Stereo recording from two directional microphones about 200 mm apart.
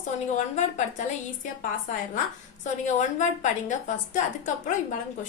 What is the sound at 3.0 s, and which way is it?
Speech, 35° left (ahead or behind).